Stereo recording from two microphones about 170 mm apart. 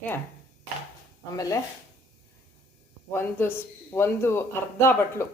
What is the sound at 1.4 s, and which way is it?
Speech, 20° left (ahead or behind).